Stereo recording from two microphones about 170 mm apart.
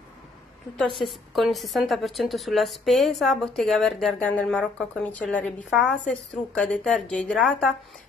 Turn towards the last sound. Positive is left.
turn(degrees=5)  # may be behind; listen again after turning